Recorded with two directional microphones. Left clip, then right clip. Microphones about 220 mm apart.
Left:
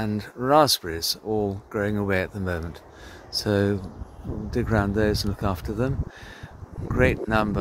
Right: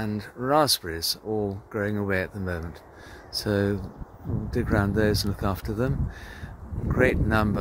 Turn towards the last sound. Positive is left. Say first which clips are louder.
# left 1 dB
turn(degrees=5)  # may be behind; listen again after turning